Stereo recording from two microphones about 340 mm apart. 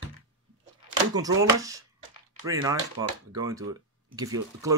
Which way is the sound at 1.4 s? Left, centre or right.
Centre.